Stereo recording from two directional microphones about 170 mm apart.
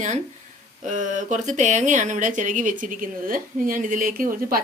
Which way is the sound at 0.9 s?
50° right (ahead or behind).